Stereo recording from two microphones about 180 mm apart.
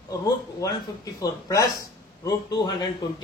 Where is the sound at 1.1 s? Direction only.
20° left (ahead or behind).